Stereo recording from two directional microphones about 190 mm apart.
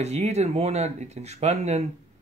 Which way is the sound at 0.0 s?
35° right (ahead or behind).